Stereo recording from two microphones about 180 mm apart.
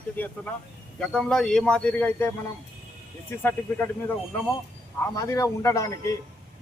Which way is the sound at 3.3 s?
10° left (ahead or behind).